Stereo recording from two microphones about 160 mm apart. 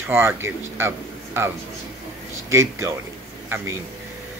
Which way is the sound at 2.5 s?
20° right (ahead or behind).